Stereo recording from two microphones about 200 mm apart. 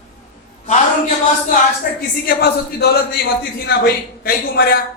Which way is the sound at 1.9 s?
45° left (ahead or behind).